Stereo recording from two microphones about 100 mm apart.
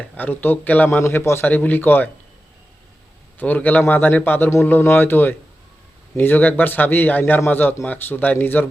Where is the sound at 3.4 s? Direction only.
15° left (ahead or behind).